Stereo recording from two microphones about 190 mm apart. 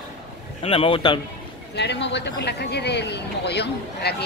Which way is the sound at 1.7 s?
65° left (ahead or behind).